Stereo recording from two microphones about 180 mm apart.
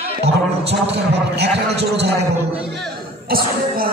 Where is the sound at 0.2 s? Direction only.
70° right (ahead or behind).